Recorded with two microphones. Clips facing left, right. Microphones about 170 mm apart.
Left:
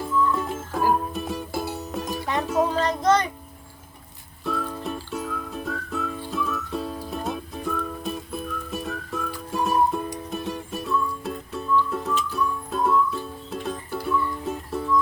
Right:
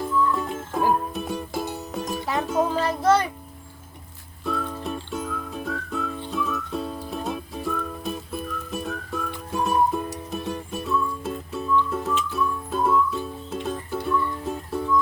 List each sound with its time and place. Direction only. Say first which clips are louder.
0.0 s music: even; centre (ahead or behind)
4.4 s music: even; centre (ahead or behind)